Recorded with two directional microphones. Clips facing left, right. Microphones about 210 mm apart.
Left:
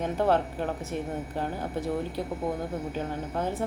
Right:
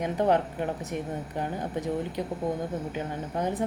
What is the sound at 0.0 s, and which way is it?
A woman's voice, 15° right (ahead or behind).